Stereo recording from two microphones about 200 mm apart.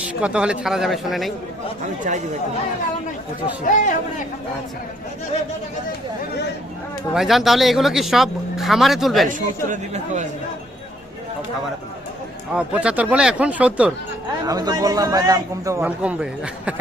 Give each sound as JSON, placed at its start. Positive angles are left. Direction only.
{"t": 0.0, "sound": "speech", "side_deg": -5}
{"t": 2.1, "sound": "speech", "side_deg": -40}
{"t": 3.6, "sound": "speech", "side_deg": 40}
{"t": 7.1, "sound": "speech", "side_deg": 0}
{"t": 9.3, "sound": "speech", "side_deg": -40}
{"t": 12.5, "sound": "a man's voice", "side_deg": -5}
{"t": 14.4, "sound": "a man's voice", "side_deg": -20}